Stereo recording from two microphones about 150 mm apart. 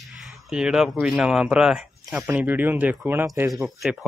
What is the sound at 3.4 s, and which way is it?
Speech, centre (ahead or behind).